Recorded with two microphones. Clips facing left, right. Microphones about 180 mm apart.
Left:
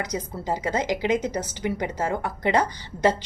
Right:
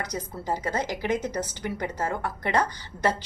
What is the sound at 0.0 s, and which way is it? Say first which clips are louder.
A woman's voice: left 3 dB; 10° left (ahead or behind).